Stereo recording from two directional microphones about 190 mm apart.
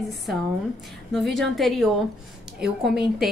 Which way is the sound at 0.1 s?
Centre (ahead or behind).